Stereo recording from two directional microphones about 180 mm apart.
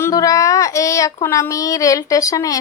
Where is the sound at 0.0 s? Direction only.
20° left (ahead or behind).